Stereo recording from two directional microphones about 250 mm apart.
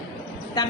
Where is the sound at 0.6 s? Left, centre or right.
Centre.